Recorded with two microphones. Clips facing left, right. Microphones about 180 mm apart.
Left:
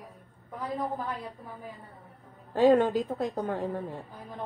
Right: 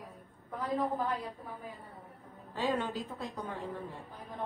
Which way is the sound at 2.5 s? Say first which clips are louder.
Left 12 dB; 45° left (ahead or behind).